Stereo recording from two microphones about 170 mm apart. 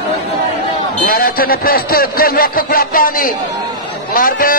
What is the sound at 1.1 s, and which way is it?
Speech, 60° left (ahead or behind).